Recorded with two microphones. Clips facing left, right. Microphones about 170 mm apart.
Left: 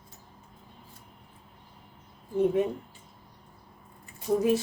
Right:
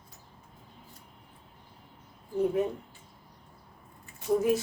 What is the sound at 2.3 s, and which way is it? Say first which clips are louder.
Speech: left 2 dB; 25° left (ahead or behind).